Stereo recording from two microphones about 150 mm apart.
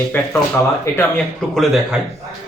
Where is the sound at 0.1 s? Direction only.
10° left (ahead or behind).